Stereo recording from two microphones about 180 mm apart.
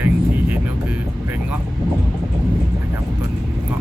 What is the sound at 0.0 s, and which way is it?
Music, 10° right (ahead or behind).